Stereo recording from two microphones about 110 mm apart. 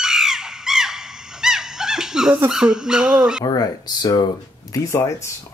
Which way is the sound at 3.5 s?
35° left (ahead or behind).